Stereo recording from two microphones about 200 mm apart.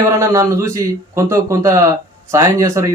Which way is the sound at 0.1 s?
15° right (ahead or behind).